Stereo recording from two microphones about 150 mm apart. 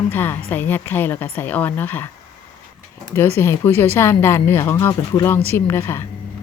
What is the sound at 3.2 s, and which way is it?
Speech, 15° left (ahead or behind).